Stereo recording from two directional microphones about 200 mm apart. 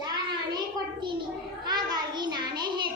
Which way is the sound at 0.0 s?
20° right (ahead or behind).